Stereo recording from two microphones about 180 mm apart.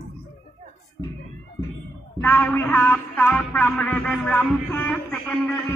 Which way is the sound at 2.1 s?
10° left (ahead or behind).